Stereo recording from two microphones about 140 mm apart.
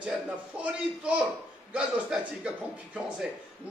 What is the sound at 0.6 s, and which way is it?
A man's voice, 10° right (ahead or behind).